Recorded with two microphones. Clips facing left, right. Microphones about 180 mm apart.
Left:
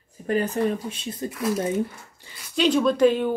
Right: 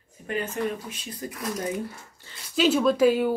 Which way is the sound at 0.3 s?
35° left (ahead or behind).